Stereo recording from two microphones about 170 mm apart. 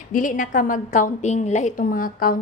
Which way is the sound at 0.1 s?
50° left (ahead or behind).